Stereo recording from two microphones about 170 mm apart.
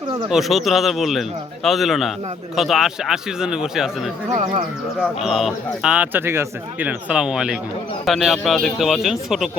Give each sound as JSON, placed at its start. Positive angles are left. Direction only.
{"t": 0.3, "sound": "speech", "side_deg": 0}
{"t": 5.2, "sound": "speech", "side_deg": 0}